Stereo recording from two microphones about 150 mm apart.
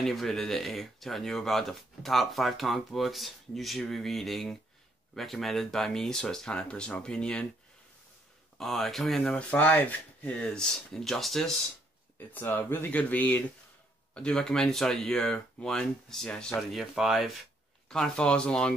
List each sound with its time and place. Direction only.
0.0 s speech: centre (ahead or behind)
8.5 s speech: centre (ahead or behind)
12.2 s speech: 10° left (ahead or behind)